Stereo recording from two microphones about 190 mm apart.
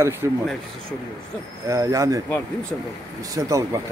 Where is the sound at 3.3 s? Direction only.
20° right (ahead or behind).